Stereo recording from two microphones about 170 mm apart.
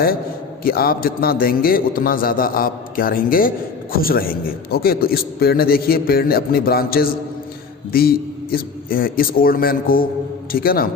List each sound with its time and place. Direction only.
0.6 s a man's voice: 60° left (ahead or behind)